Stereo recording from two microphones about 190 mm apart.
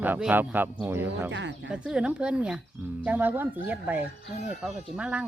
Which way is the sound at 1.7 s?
5° right (ahead or behind).